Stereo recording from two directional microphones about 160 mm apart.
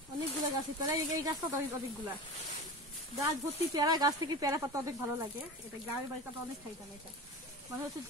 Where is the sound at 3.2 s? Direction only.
25° right (ahead or behind).